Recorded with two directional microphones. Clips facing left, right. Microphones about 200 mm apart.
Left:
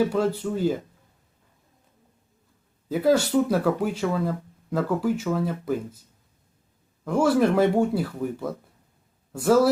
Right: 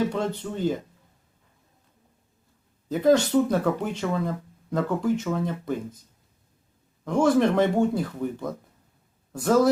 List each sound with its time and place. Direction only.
0.1 s speech: 5° left (ahead or behind)
2.9 s speech: 5° left (ahead or behind)
7.0 s speech: 5° left (ahead or behind)